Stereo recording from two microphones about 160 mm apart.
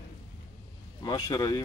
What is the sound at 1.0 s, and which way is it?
Speech, 25° left (ahead or behind).